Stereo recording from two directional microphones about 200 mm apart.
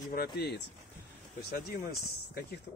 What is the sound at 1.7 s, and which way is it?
Speech, 50° left (ahead or behind).